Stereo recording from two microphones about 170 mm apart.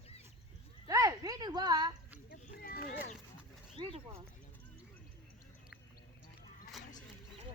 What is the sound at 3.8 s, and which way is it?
Speech, 30° right (ahead or behind).